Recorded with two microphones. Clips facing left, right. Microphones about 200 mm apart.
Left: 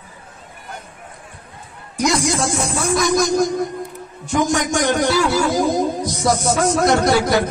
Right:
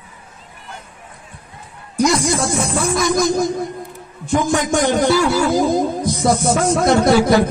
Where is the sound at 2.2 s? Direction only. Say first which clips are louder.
Right 1 dB; 55° right (ahead or behind).